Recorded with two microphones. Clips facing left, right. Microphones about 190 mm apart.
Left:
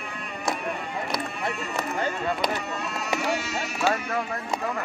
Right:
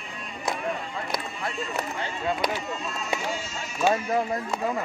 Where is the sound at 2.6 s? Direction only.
70° left (ahead or behind).